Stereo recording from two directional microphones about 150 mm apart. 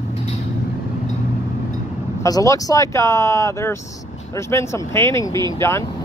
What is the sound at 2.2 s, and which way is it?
Speech, 25° left (ahead or behind).